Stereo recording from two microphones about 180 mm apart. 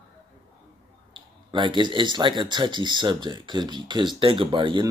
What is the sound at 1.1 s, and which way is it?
Speech, 25° right (ahead or behind).